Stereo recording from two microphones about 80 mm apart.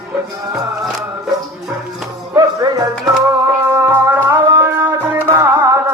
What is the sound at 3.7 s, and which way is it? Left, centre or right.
Music, right.